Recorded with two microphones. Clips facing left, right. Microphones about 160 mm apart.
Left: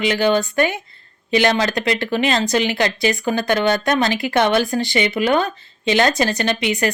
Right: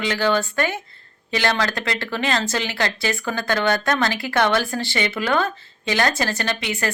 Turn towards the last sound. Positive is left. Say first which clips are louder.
# left 6 dB
turn(degrees=15)  # may be behind; listen again after turning